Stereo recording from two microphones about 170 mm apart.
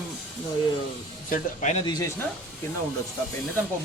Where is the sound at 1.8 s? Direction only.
25° left (ahead or behind).